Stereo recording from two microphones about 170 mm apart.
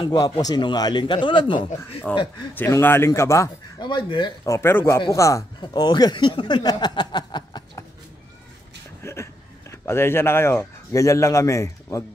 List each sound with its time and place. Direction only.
0.0 s speech: 25° left (ahead or behind)
2.1 s speech: 5° left (ahead or behind)
3.9 s speech: 25° left (ahead or behind)
4.6 s speech: 15° left (ahead or behind)
9.0 s speech: 15° left (ahead or behind)